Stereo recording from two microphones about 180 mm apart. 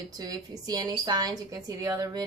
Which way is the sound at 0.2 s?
20° right (ahead or behind).